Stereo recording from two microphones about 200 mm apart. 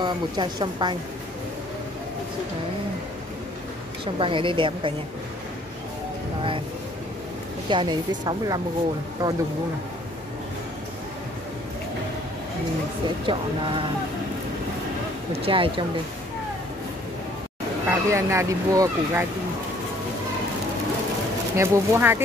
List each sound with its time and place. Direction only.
0.0 s a woman's voice: 20° right (ahead or behind)
4.0 s a woman's voice: 25° right (ahead or behind)
7.7 s a woman's voice: 20° right (ahead or behind)
13.2 s a woman's voice: 25° right (ahead or behind)
15.4 s a woman's voice: 25° right (ahead or behind)
17.8 s speech: 15° right (ahead or behind)
21.5 s speech: 10° right (ahead or behind)